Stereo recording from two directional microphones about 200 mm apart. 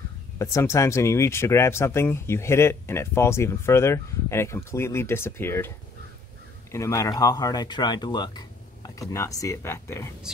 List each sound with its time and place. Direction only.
0.4 s speech: 15° left (ahead or behind)
6.7 s speech: 15° left (ahead or behind)